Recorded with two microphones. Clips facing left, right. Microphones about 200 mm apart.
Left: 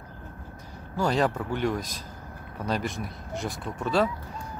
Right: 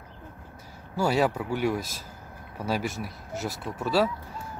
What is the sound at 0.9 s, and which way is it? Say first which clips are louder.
Speech: right 1 dB; 10° right (ahead or behind).